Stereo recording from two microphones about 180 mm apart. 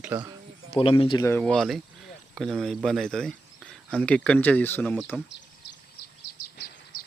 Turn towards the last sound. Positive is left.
turn(degrees=55)  # may be behind; listen again after turning